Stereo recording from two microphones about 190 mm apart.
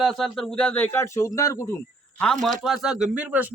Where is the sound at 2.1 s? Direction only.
5° left (ahead or behind).